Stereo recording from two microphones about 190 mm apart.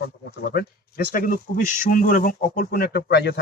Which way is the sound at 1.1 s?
45° left (ahead or behind).